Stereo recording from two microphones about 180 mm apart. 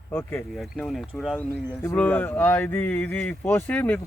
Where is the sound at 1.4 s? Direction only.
10° left (ahead or behind).